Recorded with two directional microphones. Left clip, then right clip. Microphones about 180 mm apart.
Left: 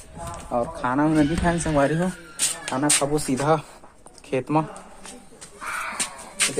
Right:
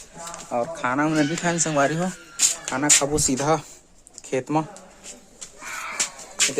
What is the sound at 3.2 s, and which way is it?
Speech, 20° right (ahead or behind).